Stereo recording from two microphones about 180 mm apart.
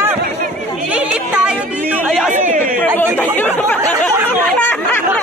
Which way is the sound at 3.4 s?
10° left (ahead or behind).